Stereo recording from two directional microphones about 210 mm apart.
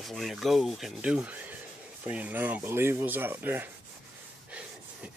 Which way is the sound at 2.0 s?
5° right (ahead or behind).